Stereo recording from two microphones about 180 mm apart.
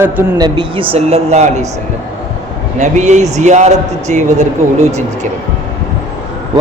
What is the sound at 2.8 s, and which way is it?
Speech, 40° right (ahead or behind).